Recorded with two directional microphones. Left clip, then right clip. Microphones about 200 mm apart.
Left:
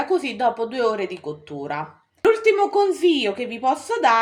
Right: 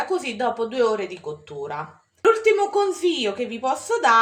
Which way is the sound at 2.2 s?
25° left (ahead or behind).